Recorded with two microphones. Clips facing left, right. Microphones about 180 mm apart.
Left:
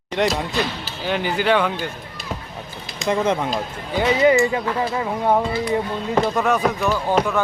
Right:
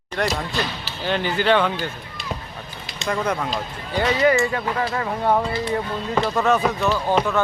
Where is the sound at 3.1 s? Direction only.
25° left (ahead or behind).